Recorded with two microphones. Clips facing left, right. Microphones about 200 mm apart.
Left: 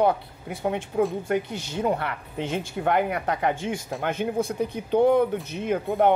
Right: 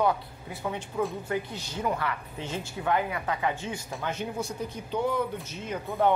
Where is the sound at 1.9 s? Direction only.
60° left (ahead or behind).